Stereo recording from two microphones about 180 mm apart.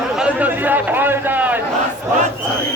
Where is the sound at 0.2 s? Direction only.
10° right (ahead or behind).